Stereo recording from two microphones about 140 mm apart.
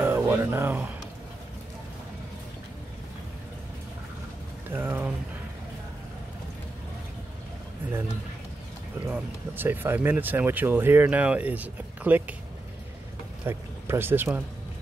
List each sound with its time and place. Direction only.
0.0 s music: 15° right (ahead or behind)
4.6 s a sound: 15° right (ahead or behind)
9.1 s speech: 15° right (ahead or behind)
13.5 s speech: 15° right (ahead or behind)